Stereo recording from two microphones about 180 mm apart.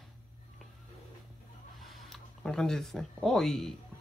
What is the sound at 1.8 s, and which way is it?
Speech, centre (ahead or behind).